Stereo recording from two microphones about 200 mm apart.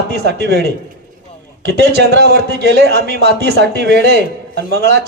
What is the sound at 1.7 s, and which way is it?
Speech, 55° right (ahead or behind).